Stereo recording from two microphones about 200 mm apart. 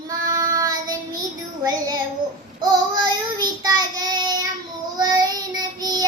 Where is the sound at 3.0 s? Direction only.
20° right (ahead or behind).